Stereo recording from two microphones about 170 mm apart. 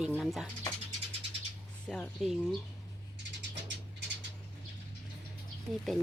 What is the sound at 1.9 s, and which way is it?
Speech, centre (ahead or behind).